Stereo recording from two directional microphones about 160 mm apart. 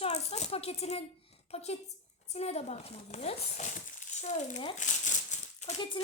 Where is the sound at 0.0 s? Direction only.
40° left (ahead or behind).